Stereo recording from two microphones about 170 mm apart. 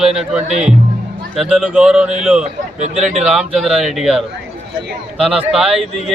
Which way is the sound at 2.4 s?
40° right (ahead or behind).